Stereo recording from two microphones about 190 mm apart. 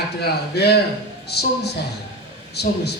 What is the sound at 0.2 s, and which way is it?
Speech, 60° left (ahead or behind).